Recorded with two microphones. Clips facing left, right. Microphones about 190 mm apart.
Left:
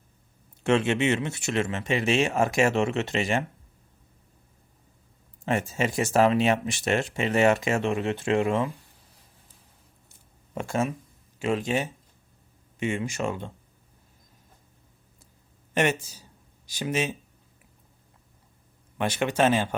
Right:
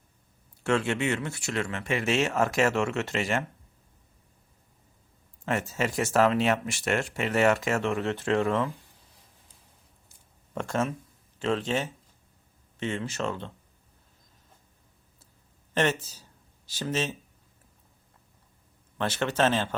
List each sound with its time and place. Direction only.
0.6 s speech: 20° left (ahead or behind)
5.5 s speech: 15° left (ahead or behind)
10.5 s speech: 10° left (ahead or behind)
15.7 s speech: 15° left (ahead or behind)
18.9 s speech: 15° left (ahead or behind)